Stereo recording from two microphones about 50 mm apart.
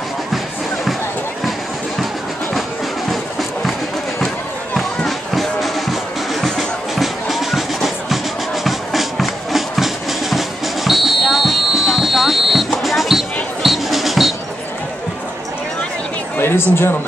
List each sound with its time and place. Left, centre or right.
3.1 s music: centre
4.7 s music: centre
7.0 s music: centre
16.3 s a sound: left